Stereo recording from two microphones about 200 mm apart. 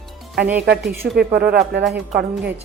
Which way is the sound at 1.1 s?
55° right (ahead or behind).